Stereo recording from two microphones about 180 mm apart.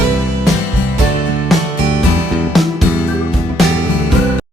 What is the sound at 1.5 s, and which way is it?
Music, centre (ahead or behind).